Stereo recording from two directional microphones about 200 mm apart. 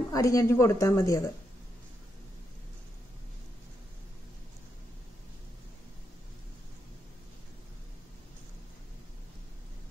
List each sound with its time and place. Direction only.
0.1 s speech: 15° left (ahead or behind)